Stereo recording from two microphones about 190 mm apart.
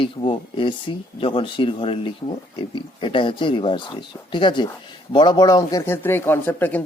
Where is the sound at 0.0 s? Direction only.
25° left (ahead or behind).